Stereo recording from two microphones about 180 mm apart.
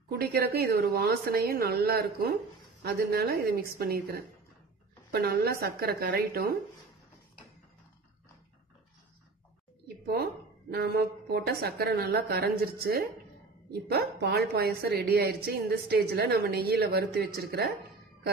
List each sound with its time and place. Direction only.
0.1 s a woman's voice: 60° right (ahead or behind)
10.0 s a woman's voice: 60° right (ahead or behind)